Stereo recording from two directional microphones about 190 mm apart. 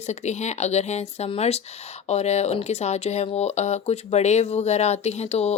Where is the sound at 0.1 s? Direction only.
35° left (ahead or behind).